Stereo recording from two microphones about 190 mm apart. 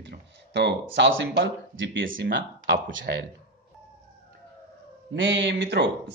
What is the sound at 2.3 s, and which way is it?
Speech, 65° right (ahead or behind).